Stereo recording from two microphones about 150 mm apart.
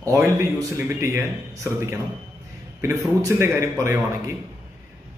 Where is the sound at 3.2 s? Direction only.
20° right (ahead or behind).